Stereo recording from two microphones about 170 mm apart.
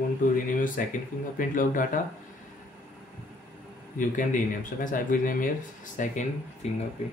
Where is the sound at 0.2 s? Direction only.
50° left (ahead or behind).